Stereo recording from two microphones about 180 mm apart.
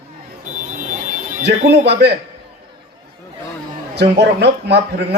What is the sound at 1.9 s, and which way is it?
Speech, 70° right (ahead or behind).